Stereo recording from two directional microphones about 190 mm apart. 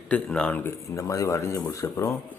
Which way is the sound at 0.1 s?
5° left (ahead or behind).